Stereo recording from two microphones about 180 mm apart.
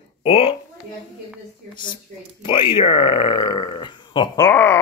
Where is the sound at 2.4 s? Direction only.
25° left (ahead or behind).